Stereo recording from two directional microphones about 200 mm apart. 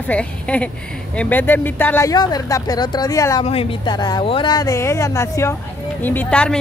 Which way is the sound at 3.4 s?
30° left (ahead or behind).